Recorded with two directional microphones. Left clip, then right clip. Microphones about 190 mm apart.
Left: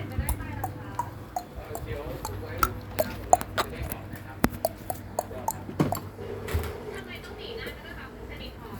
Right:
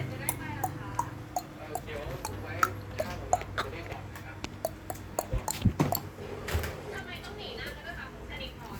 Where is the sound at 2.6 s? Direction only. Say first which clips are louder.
Left 1 dB; 10° left (ahead or behind).